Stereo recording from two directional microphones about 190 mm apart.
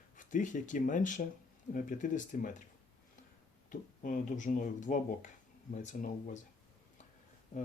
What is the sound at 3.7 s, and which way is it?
Speech, 40° left (ahead or behind).